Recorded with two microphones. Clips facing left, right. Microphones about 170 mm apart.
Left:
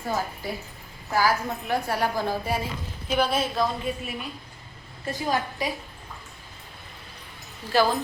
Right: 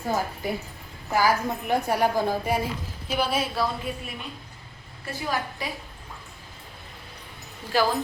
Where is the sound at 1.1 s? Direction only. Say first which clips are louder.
Right 1 dB; 15° right (ahead or behind); by 4.0 s centre (ahead or behind).